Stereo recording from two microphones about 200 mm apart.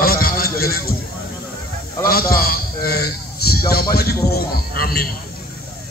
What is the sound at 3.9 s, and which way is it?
A man's voice, 50° left (ahead or behind).